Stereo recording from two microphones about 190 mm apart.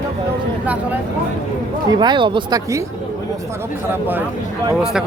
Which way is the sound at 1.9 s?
25° right (ahead or behind).